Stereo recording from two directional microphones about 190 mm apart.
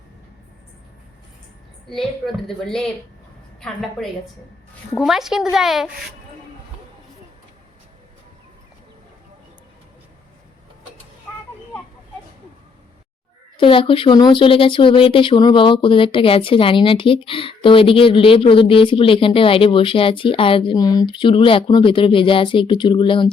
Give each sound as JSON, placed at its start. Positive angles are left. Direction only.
{"t": 1.9, "sound": "speech", "side_deg": 0}
{"t": 13.6, "sound": "speech", "side_deg": 25}